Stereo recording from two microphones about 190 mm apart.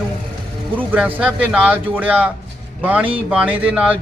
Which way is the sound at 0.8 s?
10° right (ahead or behind).